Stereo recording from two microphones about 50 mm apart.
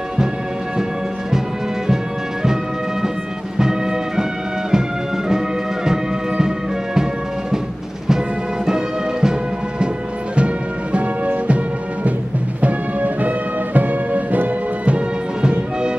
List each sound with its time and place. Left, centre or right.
4.2 s music: centre
5.9 s music: centre
8.6 s music: centre
10.3 s music: right